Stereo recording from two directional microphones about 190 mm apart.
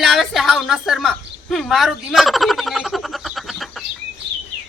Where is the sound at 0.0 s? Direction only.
Centre (ahead or behind).